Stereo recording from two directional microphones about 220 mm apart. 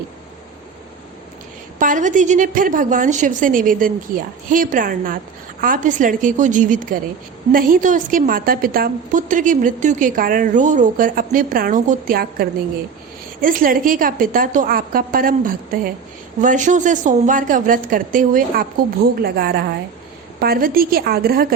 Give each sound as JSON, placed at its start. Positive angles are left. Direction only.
{"t": 1.8, "sound": "a woman's voice", "side_deg": -35}